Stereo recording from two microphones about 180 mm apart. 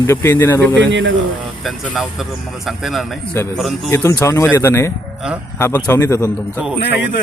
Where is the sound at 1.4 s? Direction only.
Centre (ahead or behind).